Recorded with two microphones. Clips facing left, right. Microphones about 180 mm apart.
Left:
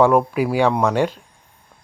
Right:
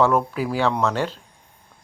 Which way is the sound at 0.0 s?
15° left (ahead or behind).